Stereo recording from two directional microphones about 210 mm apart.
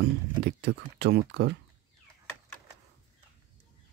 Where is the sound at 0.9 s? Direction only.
55° right (ahead or behind).